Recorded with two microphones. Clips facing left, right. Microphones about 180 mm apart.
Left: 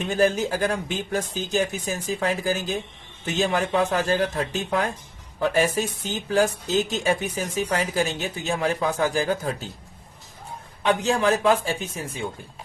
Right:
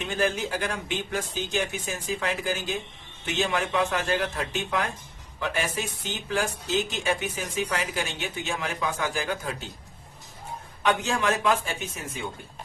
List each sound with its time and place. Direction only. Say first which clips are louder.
0.1 s speech: left 6 dB; 40° left (ahead or behind)
10.8 s speech: left 4 dB; 35° left (ahead or behind)